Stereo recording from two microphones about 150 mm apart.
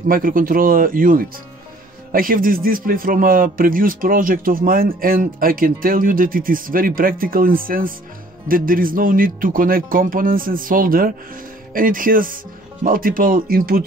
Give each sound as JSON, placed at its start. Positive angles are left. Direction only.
{"t": 0.1, "sound": "a man's voice", "side_deg": -70}